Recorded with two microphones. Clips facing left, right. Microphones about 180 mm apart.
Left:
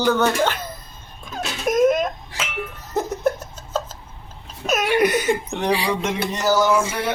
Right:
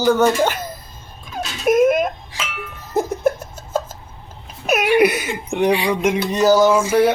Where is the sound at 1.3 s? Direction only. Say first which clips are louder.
Right 4 dB; 10° right (ahead or behind).